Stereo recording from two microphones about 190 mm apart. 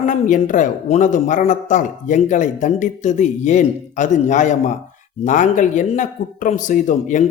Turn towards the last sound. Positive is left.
turn(degrees=45)  # may be behind; listen again after turning